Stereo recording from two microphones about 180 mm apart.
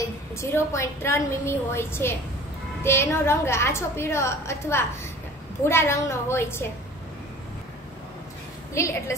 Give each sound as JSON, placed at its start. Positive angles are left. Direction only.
{"t": 0.4, "sound": "a woman's voice", "side_deg": 15}
{"t": 8.7, "sound": "a woman's voice", "side_deg": 15}